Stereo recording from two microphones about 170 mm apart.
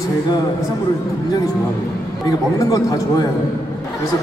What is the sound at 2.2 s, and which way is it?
Speech, 20° left (ahead or behind).